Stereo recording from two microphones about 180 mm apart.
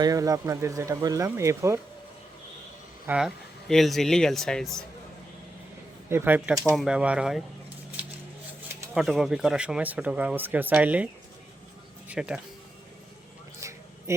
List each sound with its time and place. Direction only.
0.0 s speech: 20° right (ahead or behind)
3.1 s speech: 5° right (ahead or behind)
6.1 s speech: 10° right (ahead or behind)
6.7 s speech: 5° right (ahead or behind)
9.0 s speech: centre (ahead or behind)
13.6 s a sound: 15° right (ahead or behind)